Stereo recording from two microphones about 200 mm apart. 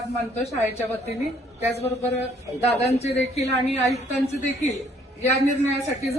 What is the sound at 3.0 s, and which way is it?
Speech, 30° left (ahead or behind).